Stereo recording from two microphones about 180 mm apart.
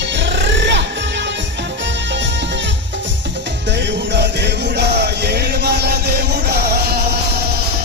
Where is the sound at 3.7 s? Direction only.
75° right (ahead or behind).